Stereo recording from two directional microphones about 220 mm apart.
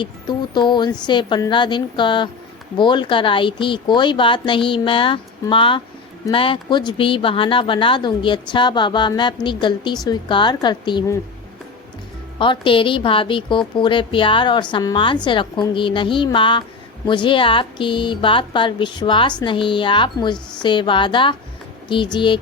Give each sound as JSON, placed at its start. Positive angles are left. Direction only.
{"t": 0.0, "sound": "speech", "side_deg": 20}
{"t": 12.4, "sound": "speech", "side_deg": 20}